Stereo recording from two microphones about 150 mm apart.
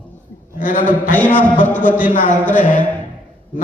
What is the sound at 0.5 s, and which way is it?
Speech, 65° left (ahead or behind).